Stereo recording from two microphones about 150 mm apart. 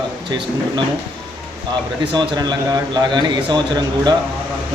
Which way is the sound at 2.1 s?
30° right (ahead or behind).